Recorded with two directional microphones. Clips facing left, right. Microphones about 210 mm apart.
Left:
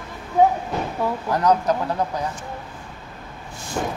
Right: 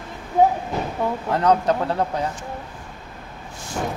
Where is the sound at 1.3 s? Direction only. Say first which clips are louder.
Right 1 dB; 30° right (ahead or behind).